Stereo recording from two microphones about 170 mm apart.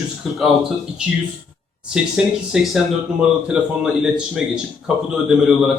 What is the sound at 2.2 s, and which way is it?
Speech, 5° right (ahead or behind).